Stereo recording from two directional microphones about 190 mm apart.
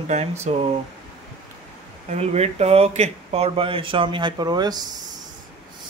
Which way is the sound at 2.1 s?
35° right (ahead or behind).